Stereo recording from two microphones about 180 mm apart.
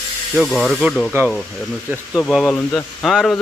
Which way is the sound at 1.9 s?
10° left (ahead or behind).